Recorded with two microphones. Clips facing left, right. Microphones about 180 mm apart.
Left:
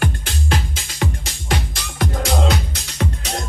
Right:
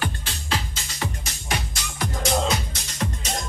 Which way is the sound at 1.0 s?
65° left (ahead or behind).